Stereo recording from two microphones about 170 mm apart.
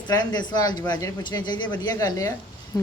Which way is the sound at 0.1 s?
25° left (ahead or behind).